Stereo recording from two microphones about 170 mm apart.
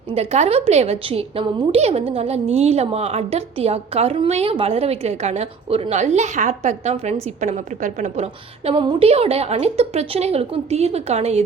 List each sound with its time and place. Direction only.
0.1 s a woman's voice: 40° right (ahead or behind)